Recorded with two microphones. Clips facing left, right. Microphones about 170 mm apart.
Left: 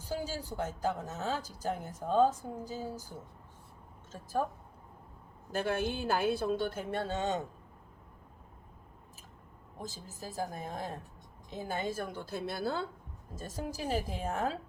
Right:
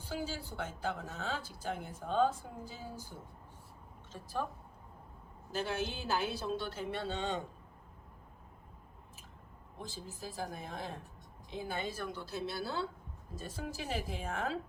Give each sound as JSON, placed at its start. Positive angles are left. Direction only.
{"t": 0.0, "sound": "speech", "side_deg": 40}
{"t": 4.1, "sound": "a woman's voice", "side_deg": 45}
{"t": 5.5, "sound": "a woman's voice", "side_deg": 50}
{"t": 9.7, "sound": "a woman's voice", "side_deg": 40}